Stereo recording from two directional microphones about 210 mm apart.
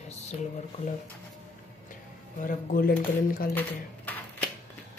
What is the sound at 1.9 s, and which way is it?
Speech, 40° left (ahead or behind).